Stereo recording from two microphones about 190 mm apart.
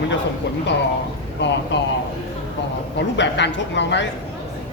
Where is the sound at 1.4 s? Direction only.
70° left (ahead or behind).